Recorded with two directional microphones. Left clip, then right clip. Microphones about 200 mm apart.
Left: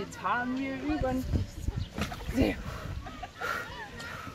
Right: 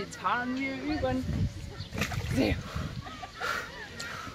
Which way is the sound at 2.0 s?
Centre (ahead or behind).